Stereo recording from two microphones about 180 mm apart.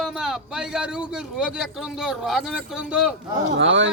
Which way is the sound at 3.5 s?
90° right.